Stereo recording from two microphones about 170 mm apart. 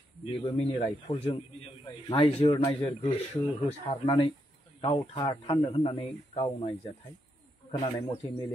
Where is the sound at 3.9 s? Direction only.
35° left (ahead or behind).